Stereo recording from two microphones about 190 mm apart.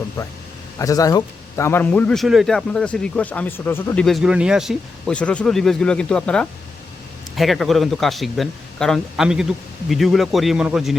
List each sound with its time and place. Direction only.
0.2 s a man's voice: 20° left (ahead or behind); by 10.9 s 5° right (ahead or behind)